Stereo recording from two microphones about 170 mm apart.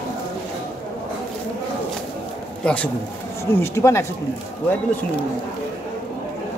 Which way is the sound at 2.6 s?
5° left (ahead or behind).